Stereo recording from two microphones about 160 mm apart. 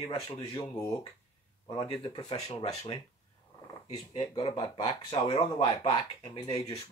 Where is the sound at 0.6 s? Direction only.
20° left (ahead or behind).